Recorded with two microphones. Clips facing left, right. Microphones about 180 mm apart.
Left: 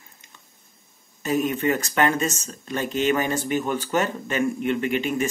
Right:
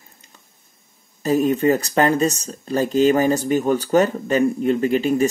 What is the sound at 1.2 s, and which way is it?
Speech, 35° right (ahead or behind).